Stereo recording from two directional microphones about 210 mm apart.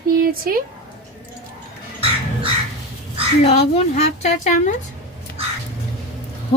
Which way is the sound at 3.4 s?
30° left (ahead or behind).